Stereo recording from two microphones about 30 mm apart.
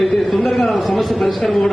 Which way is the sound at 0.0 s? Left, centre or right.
Centre.